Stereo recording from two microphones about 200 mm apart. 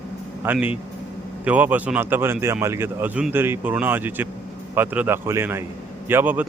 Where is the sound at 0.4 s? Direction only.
10° right (ahead or behind).